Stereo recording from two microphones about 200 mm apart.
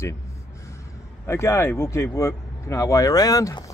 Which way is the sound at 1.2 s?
15° left (ahead or behind).